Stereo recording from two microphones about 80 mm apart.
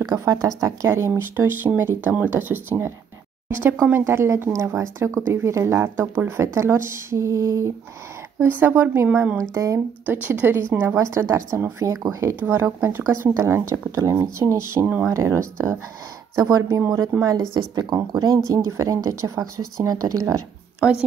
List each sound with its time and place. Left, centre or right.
0.0 s speech: right
3.4 s a sound: right
4.0 s speech: right
8.4 s speech: right
9.4 s speech: right
10.0 s speech: right
12.4 s speech: right
18.5 s speech: right